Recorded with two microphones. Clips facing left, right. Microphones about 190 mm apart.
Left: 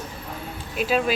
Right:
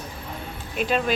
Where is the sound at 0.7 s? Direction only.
5° left (ahead or behind).